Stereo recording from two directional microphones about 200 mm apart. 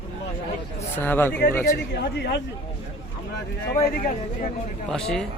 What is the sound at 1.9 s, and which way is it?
Speech, 55° left (ahead or behind).